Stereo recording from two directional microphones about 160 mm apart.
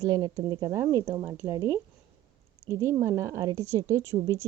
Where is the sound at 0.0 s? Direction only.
25° right (ahead or behind).